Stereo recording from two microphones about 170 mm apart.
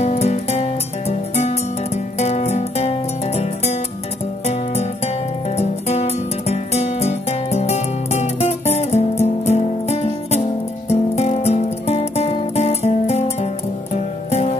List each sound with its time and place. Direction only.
0.0 s music: 40° left (ahead or behind)